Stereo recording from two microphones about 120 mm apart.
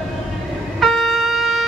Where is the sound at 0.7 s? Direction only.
Centre (ahead or behind).